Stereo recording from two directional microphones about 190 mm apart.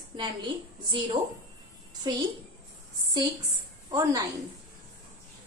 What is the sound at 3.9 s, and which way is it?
Speech, 20° right (ahead or behind).